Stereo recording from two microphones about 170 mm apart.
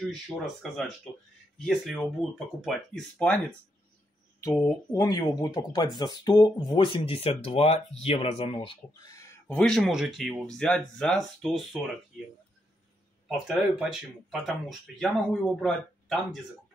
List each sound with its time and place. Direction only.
0.0 s speech: centre (ahead or behind)
4.4 s speech: 20° left (ahead or behind)
9.5 s speech: 5° left (ahead or behind)
13.3 s speech: centre (ahead or behind)